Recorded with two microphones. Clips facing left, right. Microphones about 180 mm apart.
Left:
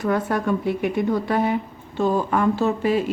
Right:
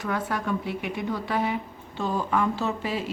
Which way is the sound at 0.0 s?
45° left (ahead or behind).